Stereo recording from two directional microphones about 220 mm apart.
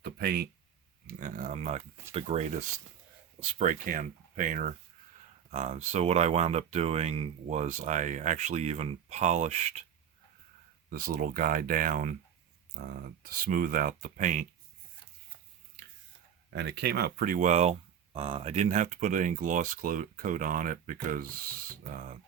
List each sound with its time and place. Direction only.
0.0 s a sound: 45° right (ahead or behind)
1.0 s speech: 35° right (ahead or behind)
10.8 s speech: 40° right (ahead or behind)
16.5 s speech: 50° right (ahead or behind)